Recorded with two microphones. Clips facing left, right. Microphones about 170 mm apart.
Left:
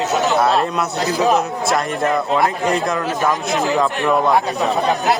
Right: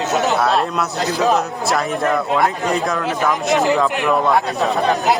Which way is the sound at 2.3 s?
Centre (ahead or behind).